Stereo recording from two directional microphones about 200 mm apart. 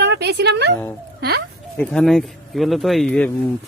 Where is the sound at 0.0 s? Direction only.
55° right (ahead or behind).